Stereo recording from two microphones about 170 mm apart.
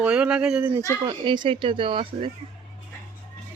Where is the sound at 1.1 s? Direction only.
25° right (ahead or behind).